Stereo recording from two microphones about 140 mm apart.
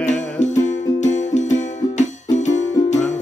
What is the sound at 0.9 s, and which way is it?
Music, 60° left (ahead or behind).